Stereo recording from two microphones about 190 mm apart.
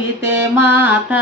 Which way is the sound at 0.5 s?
10° right (ahead or behind).